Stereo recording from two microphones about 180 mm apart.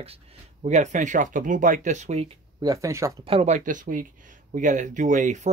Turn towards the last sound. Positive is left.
turn(degrees=-40)  # may be behind; listen again after turning